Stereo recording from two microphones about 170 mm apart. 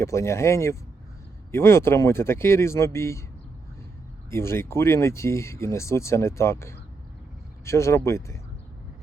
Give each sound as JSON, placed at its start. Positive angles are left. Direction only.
{"t": 0.0, "sound": "speech", "side_deg": 15}
{"t": 4.3, "sound": "speech", "side_deg": 15}